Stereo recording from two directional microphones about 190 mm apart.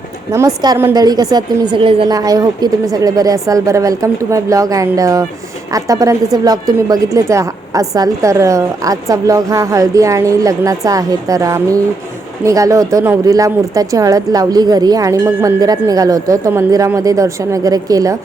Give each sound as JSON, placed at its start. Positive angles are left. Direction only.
{"t": 0.3, "sound": "a woman's voice", "side_deg": -20}